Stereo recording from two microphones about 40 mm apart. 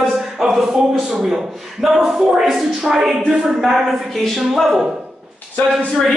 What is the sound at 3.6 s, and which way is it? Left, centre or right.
Speech, centre.